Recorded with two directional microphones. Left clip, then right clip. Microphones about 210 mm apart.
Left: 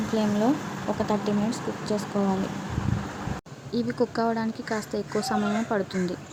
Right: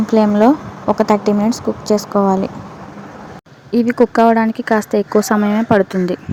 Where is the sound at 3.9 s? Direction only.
30° right (ahead or behind).